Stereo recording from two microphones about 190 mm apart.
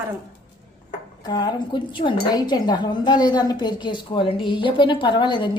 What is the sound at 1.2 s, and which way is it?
Speech, 20° left (ahead or behind).